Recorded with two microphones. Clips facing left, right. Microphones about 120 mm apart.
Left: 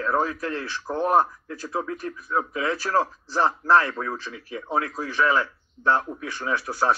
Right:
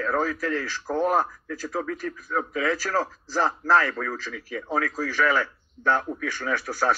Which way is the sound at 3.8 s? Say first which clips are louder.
Even; 25° left (ahead or behind).